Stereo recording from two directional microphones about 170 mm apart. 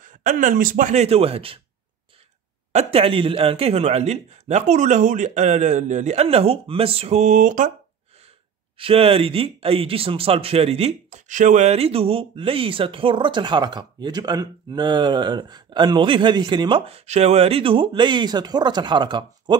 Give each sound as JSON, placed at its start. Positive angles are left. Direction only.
{"t": 0.0, "sound": "speech", "side_deg": -50}
{"t": 2.7, "sound": "speech", "side_deg": -35}
{"t": 8.7, "sound": "speech", "side_deg": -35}